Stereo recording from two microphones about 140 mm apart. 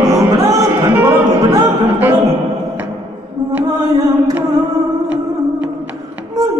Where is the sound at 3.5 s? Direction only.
20° right (ahead or behind).